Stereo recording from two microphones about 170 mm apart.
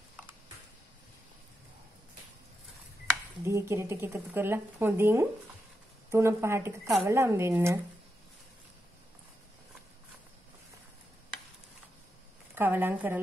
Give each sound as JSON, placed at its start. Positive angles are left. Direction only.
{"t": 3.4, "sound": "speech", "side_deg": -15}
{"t": 12.5, "sound": "speech", "side_deg": -10}